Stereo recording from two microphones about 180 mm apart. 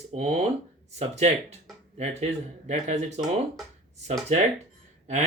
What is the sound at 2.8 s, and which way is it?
Speech, 40° right (ahead or behind).